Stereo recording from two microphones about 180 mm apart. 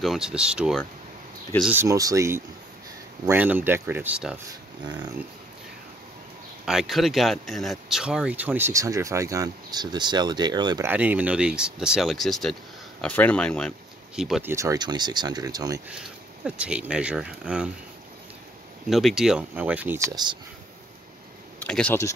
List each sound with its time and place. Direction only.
0.0 s speech: centre (ahead or behind)
6.6 s speech: 5° right (ahead or behind); by 10.9 s 25° right (ahead or behind)
10.9 s speech: 10° right (ahead or behind)
14.5 s speech: 20° right (ahead or behind)
16.4 s speech: 5° right (ahead or behind)
18.9 s speech: centre (ahead or behind); by 20.3 s 20° right (ahead or behind)
21.5 s speech: 5° left (ahead or behind)